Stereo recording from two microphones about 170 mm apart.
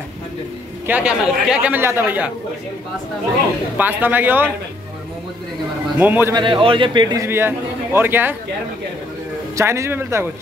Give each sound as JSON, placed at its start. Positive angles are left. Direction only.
{"t": 0.8, "sound": "a man's voice", "side_deg": -10}
{"t": 3.7, "sound": "a man's voice", "side_deg": -10}
{"t": 5.9, "sound": "a man's voice", "side_deg": -10}
{"t": 6.3, "sound": "a man's voice", "side_deg": -30}
{"t": 7.2, "sound": "a man's voice", "side_deg": -15}
{"t": 9.6, "sound": "a man's voice", "side_deg": -15}